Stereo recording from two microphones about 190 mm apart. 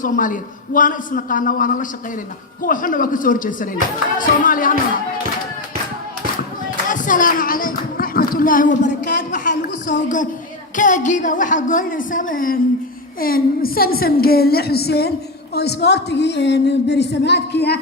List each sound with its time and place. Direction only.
0.0 s a woman's voice: 45° left (ahead or behind)
6.8 s a woman's voice: 45° left (ahead or behind); by 17.7 s 60° left (ahead or behind)